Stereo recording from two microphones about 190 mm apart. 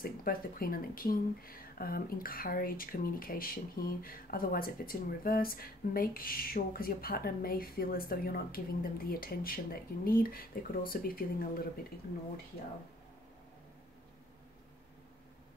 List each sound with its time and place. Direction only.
0.0 s speech: 50° left (ahead or behind)